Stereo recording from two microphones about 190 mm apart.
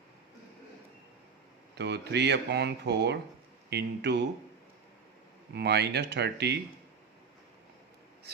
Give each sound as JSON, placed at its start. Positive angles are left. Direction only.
{"t": 1.7, "sound": "speech", "side_deg": -60}
{"t": 5.5, "sound": "speech", "side_deg": -60}